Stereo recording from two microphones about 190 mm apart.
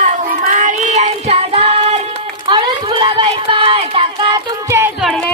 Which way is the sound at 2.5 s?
25° right (ahead or behind).